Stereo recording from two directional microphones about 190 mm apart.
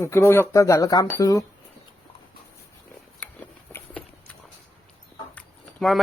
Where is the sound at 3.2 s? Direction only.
10° left (ahead or behind).